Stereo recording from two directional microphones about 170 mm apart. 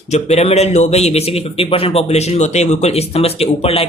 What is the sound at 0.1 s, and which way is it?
Speech, 40° left (ahead or behind).